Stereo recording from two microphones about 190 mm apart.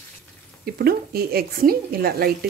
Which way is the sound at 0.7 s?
55° right (ahead or behind).